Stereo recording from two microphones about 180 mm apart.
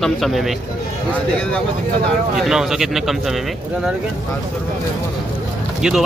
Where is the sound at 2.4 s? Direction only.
5° right (ahead or behind).